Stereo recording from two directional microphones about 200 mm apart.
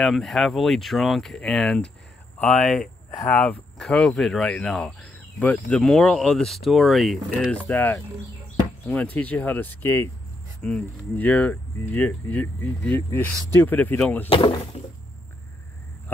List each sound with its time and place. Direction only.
0.0 s speech: centre (ahead or behind)
14.3 s speech: 25° left (ahead or behind)